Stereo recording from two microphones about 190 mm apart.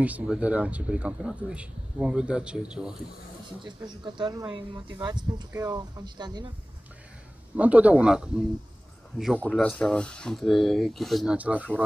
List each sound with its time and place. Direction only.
0.0 s speech: 5° right (ahead or behind)
3.6 s speech: 25° right (ahead or behind)
7.5 s speech: 5° right (ahead or behind)